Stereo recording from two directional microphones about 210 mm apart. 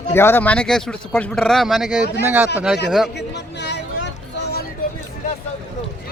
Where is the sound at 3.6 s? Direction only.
55° left (ahead or behind).